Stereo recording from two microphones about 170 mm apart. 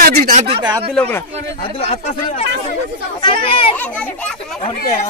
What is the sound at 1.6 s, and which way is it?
Speech, 35° left (ahead or behind).